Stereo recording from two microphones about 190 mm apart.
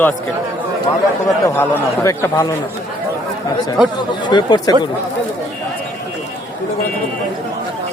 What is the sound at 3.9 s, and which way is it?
Speech, 25° left (ahead or behind).